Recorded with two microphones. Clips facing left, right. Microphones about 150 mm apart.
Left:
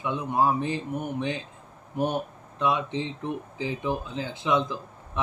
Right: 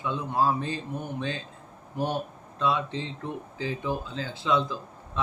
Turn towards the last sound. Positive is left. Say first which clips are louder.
# even
turn(degrees=20)  # may be behind; listen again after turning